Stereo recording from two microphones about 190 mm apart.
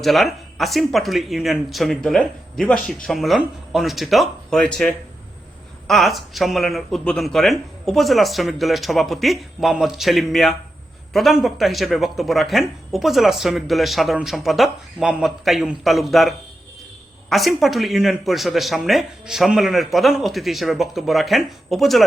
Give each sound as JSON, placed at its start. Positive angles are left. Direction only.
{"t": 0.0, "sound": "speech", "side_deg": 0}